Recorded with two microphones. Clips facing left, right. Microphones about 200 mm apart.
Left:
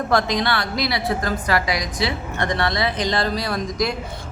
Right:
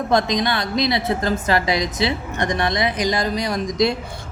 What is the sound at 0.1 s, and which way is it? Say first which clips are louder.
A woman's voice: right 2 dB; 20° right (ahead or behind).